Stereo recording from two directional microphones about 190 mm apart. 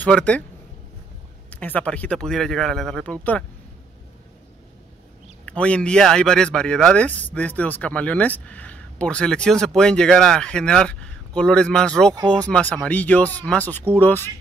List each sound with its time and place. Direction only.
0.0 s speech: 5° left (ahead or behind)
1.5 s a man's voice: 10° left (ahead or behind)
5.4 s a man's voice: 5° left (ahead or behind)